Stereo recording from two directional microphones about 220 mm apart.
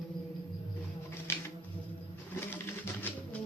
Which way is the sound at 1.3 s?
10° left (ahead or behind).